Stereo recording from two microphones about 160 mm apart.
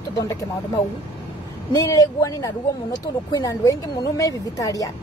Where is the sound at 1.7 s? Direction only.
20° left (ahead or behind).